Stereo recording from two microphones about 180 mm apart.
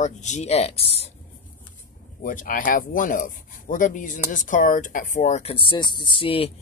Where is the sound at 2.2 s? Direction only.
50° left (ahead or behind).